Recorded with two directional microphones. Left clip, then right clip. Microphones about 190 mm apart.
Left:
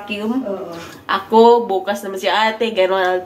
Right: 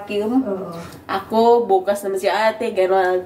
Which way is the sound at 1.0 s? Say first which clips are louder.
Left 5 dB; centre (ahead or behind).